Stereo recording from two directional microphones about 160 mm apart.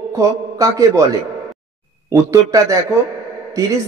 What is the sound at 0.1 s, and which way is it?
Speech, 20° right (ahead or behind).